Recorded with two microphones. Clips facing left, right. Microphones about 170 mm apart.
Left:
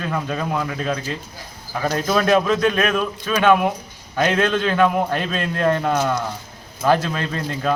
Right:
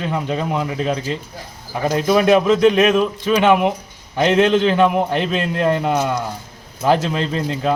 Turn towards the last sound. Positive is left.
turn(degrees=-20)  # may be behind; listen again after turning